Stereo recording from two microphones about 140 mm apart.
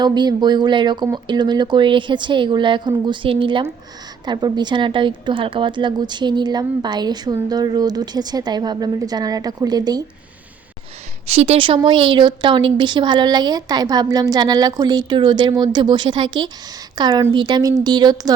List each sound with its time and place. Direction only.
0.0 s a woman's voice: 30° right (ahead or behind)
11.3 s a woman's voice: 45° right (ahead or behind); by 18.3 s 30° right (ahead or behind)